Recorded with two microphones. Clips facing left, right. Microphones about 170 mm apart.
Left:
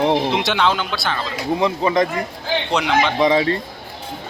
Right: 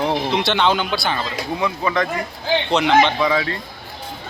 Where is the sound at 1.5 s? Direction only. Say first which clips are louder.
Left 4 dB; 30° left (ahead or behind).